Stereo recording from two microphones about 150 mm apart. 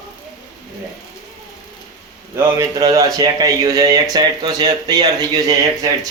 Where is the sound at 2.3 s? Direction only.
20° right (ahead or behind).